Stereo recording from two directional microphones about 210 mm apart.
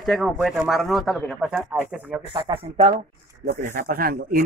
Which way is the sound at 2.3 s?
25° right (ahead or behind).